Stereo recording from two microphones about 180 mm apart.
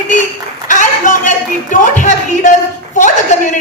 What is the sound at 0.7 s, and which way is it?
A man's voice, 45° left (ahead or behind).